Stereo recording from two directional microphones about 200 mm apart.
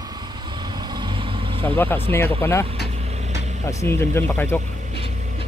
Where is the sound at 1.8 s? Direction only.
10° left (ahead or behind).